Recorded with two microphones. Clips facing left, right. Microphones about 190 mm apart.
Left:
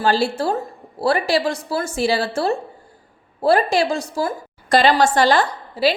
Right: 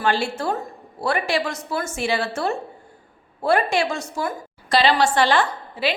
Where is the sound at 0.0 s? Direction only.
35° left (ahead or behind).